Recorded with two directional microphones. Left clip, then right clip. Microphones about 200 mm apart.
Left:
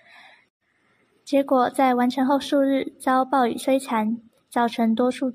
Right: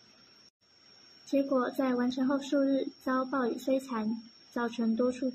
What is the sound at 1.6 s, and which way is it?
A woman's voice, 55° left (ahead or behind).